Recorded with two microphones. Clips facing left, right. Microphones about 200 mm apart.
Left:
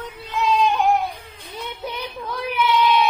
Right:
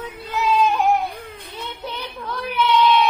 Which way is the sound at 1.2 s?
60° right (ahead or behind).